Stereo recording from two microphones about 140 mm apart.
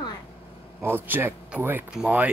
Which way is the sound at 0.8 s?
15° right (ahead or behind).